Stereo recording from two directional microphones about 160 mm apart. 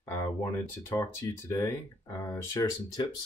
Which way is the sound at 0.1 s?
20° left (ahead or behind).